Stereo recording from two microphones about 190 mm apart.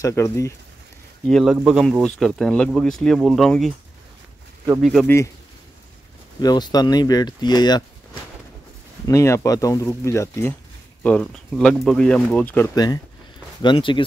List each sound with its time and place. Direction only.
0.0 s speech: 15° left (ahead or behind)
1.2 s speech: centre (ahead or behind)
4.8 s speech: centre (ahead or behind)
6.4 s speech: 20° left (ahead or behind)
11.0 s speech: 5° left (ahead or behind)
13.6 s speech: 25° left (ahead or behind)